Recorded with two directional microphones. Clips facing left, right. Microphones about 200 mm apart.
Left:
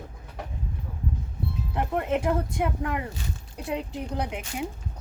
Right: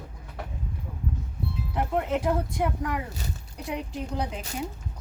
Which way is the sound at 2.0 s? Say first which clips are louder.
Left 1 dB; 20° left (ahead or behind).